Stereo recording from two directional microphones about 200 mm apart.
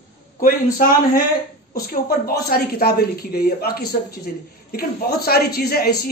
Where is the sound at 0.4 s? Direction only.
45° left (ahead or behind).